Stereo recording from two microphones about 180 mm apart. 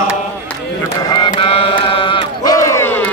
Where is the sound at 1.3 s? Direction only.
30° left (ahead or behind); by 3.0 s 15° left (ahead or behind).